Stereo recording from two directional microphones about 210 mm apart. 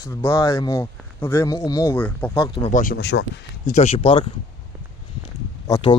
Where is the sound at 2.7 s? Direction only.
40° left (ahead or behind).